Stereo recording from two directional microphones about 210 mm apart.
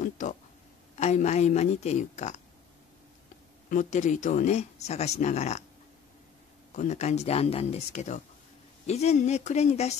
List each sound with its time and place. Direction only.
0.0 s a sound: 35° left (ahead or behind)
0.9 s speech: 35° left (ahead or behind)
3.7 s speech: 35° left (ahead or behind)
6.7 s speech: 35° left (ahead or behind)